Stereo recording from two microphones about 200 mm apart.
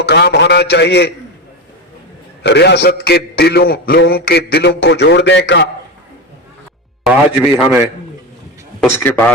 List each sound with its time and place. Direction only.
0.0 s a man's voice: 55° left (ahead or behind)
2.4 s a man's voice: 60° left (ahead or behind)
7.0 s a man's voice: 5° right (ahead or behind)
8.8 s a man's voice: 10° left (ahead or behind)